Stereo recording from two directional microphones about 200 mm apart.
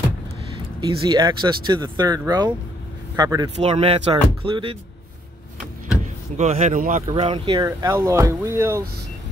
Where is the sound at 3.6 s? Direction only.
30° right (ahead or behind).